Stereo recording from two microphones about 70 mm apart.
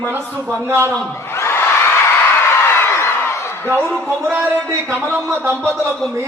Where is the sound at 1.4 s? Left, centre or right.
Left.